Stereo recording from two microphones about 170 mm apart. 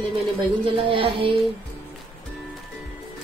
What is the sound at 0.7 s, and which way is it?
Speech, 30° right (ahead or behind).